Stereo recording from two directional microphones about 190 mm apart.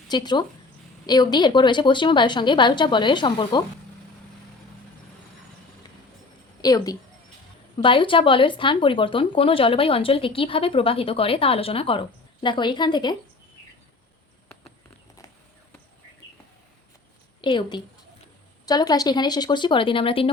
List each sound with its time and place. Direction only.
0.1 s speech: 20° left (ahead or behind)
6.6 s a woman's voice: 20° left (ahead or behind)
17.4 s speech: 25° left (ahead or behind)